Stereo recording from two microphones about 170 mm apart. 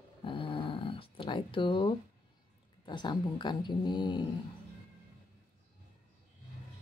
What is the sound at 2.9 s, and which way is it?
Speech, 25° left (ahead or behind).